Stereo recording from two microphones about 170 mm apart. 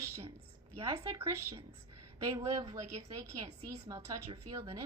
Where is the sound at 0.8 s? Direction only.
35° right (ahead or behind).